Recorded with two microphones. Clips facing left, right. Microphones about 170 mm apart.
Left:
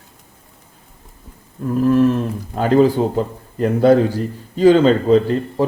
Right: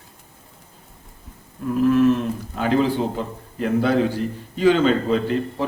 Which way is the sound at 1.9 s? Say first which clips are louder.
Left 2 dB; 35° left (ahead or behind).